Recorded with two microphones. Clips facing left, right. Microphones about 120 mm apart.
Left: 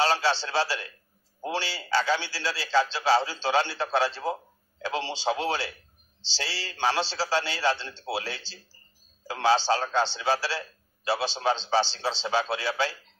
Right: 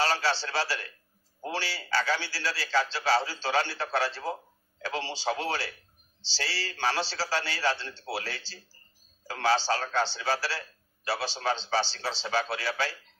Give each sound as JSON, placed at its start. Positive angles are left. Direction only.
{"t": 0.0, "sound": "a man's voice", "side_deg": 20}